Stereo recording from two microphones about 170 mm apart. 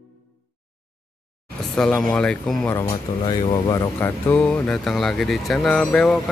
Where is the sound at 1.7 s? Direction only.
5° left (ahead or behind).